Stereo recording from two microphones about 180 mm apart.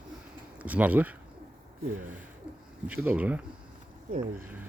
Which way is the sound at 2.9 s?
5° right (ahead or behind).